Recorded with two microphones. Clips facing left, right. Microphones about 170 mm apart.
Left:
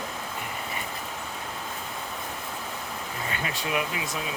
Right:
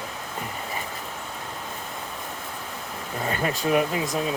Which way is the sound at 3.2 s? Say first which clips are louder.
Right 8 dB; 40° right (ahead or behind).